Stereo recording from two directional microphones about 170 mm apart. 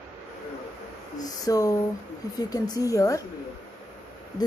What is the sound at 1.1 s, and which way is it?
A woman's voice, 20° left (ahead or behind).